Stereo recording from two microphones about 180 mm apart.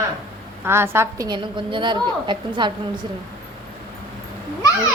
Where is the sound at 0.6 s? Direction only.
15° right (ahead or behind).